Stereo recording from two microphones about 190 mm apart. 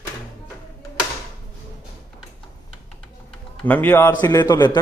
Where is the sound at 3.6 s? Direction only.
10° left (ahead or behind).